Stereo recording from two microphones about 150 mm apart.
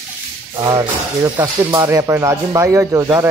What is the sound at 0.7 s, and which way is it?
Speech, 25° right (ahead or behind).